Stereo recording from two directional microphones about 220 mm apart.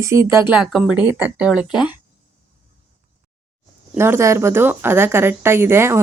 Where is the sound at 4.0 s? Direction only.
10° right (ahead or behind).